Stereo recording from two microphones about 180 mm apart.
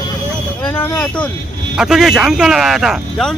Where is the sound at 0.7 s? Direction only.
10° left (ahead or behind).